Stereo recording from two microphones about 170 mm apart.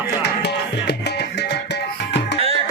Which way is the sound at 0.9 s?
75° left (ahead or behind).